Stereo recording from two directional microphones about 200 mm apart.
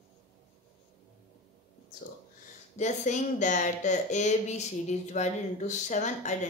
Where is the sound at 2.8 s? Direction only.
35° left (ahead or behind).